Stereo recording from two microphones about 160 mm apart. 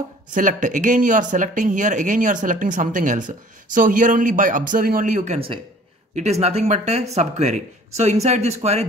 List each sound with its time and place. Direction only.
0.3 s speech: 55° right (ahead or behind)